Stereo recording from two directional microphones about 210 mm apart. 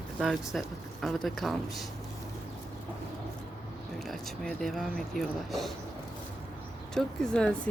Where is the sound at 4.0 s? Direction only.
Centre (ahead or behind).